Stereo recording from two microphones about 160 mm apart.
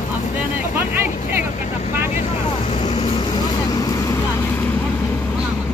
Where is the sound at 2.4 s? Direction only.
40° left (ahead or behind); by 4.2 s 25° left (ahead or behind).